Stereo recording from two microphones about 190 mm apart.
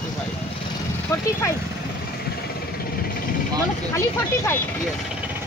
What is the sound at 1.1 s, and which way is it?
Speech, 15° left (ahead or behind).